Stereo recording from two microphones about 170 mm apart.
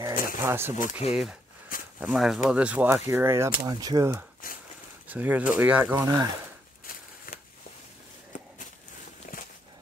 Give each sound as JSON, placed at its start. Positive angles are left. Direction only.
{"t": 0.1, "sound": "a sound", "side_deg": 55}
{"t": 0.4, "sound": "speech", "side_deg": -15}
{"t": 1.0, "sound": "speech", "side_deg": 40}
{"t": 2.0, "sound": "speech", "side_deg": 0}
{"t": 4.4, "sound": "a sound", "side_deg": 55}
{"t": 5.0, "sound": "speech", "side_deg": -10}